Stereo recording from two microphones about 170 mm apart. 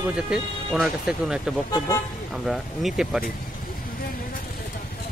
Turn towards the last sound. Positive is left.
turn(degrees=-5)  # may be behind; listen again after turning